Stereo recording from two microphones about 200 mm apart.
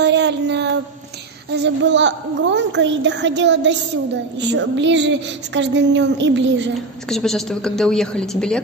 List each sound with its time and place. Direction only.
0.0 s a sound: 60° right (ahead or behind)
1.5 s a woman's voice: 60° right (ahead or behind)
7.1 s a woman's voice: centre (ahead or behind)